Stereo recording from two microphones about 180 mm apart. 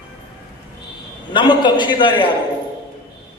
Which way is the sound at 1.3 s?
25° left (ahead or behind).